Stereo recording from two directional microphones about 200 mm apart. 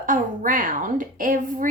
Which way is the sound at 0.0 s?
40° right (ahead or behind).